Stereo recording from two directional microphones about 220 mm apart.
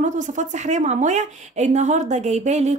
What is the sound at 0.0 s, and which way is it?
A woman's voice, 35° right (ahead or behind).